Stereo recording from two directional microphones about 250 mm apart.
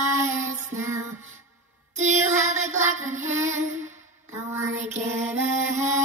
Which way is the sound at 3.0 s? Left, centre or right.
Right.